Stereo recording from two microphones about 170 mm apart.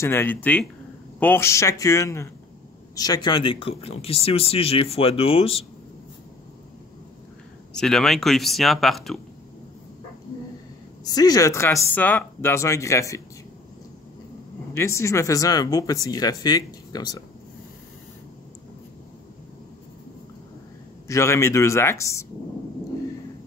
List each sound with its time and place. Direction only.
0.0 s speech: 15° left (ahead or behind); by 5.7 s 35° left (ahead or behind)
7.7 s speech: 5° left (ahead or behind)
11.1 s speech: 20° left (ahead or behind)
14.7 s speech: 15° left (ahead or behind)
21.1 s speech: 15° left (ahead or behind)